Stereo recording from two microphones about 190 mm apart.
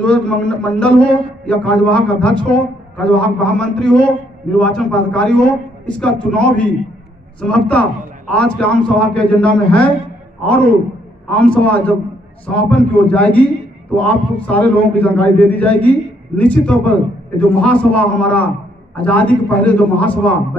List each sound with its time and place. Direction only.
0.0 s a man's voice: 5° left (ahead or behind)